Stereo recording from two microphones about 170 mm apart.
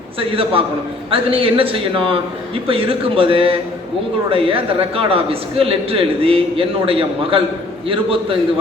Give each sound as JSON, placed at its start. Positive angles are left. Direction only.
{"t": 0.2, "sound": "a man's voice", "side_deg": -35}